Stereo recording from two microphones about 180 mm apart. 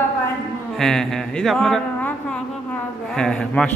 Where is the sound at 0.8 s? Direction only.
Centre (ahead or behind).